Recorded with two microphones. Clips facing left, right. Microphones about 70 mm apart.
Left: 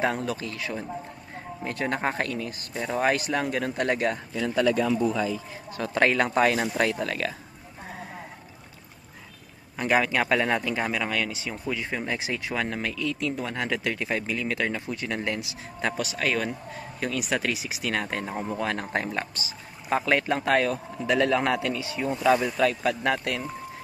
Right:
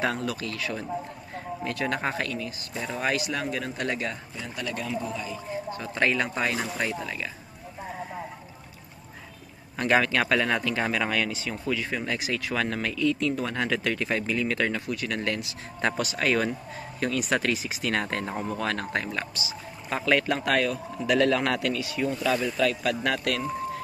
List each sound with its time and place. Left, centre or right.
0.0 s a man's voice: left
5.8 s speech: left
6.8 s speech: left
9.8 s a man's voice: centre
10.8 s speech: centre
11.5 s a man's voice: left
12.5 s speech: centre
14.9 s a man's voice: left
15.8 s speech: centre
18.6 s a man's voice: centre
19.1 s speech: left
20.1 s a man's voice: left